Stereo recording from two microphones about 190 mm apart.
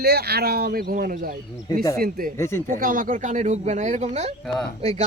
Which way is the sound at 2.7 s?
45° right (ahead or behind).